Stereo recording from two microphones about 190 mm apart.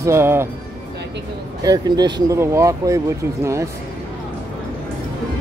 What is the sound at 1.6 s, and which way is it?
Speech, 20° right (ahead or behind).